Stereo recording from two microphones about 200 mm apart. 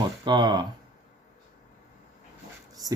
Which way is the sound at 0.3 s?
20° right (ahead or behind).